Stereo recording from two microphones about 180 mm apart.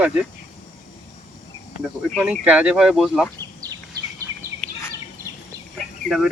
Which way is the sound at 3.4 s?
20° right (ahead or behind).